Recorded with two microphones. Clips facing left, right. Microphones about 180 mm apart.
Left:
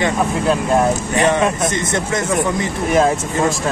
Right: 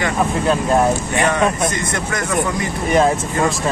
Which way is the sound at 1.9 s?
25° left (ahead or behind).